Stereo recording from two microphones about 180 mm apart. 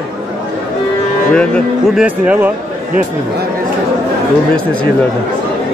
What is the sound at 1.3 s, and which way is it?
Speech, 5° left (ahead or behind).